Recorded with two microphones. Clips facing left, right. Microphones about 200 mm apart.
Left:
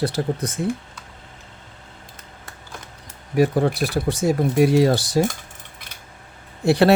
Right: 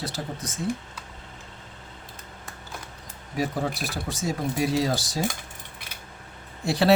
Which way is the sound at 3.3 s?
60° left (ahead or behind).